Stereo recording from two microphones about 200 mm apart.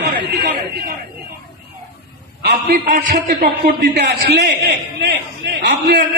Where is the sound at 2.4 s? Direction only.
45° right (ahead or behind).